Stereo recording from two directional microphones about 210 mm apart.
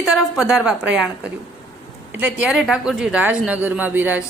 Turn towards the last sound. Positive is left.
turn(degrees=-10)  # may be behind; listen again after turning